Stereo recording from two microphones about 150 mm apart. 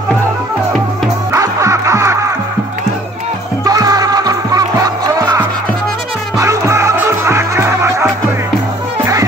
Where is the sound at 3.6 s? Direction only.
25° right (ahead or behind).